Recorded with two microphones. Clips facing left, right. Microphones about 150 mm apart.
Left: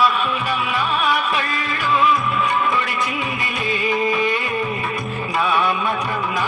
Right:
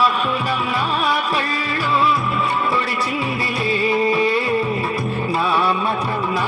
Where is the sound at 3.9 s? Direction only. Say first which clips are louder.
Right 2 dB; 35° right (ahead or behind).